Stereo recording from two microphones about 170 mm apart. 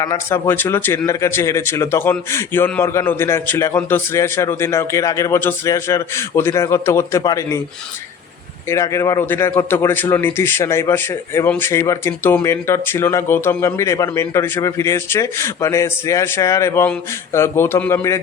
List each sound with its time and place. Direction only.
0.0 s speech: 15° left (ahead or behind)
8.7 s speech: 15° left (ahead or behind)